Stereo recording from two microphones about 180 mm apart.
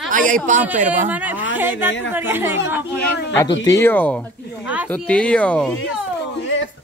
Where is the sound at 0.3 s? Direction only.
45° right (ahead or behind).